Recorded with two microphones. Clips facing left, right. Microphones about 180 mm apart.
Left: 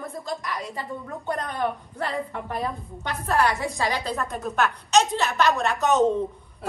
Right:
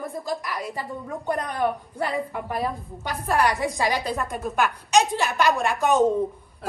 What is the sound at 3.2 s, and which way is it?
Speech, 15° right (ahead or behind).